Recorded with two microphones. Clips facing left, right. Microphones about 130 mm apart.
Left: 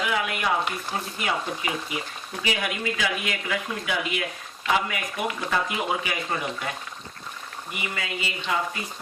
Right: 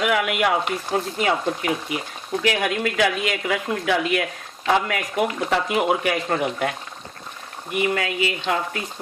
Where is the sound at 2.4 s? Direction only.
85° right; by 6.7 s 65° right (ahead or behind).